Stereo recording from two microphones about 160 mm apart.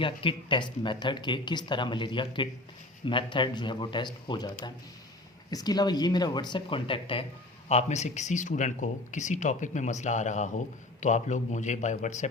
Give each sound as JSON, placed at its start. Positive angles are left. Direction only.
{"t": 0.0, "sound": "speech", "side_deg": 35}